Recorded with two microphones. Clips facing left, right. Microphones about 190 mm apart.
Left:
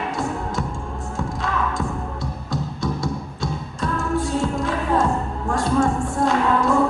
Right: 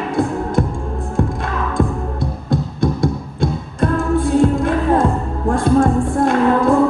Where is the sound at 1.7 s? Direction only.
55° right (ahead or behind).